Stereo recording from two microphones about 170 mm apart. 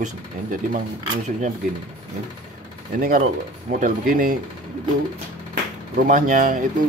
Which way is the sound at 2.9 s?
55° right (ahead or behind).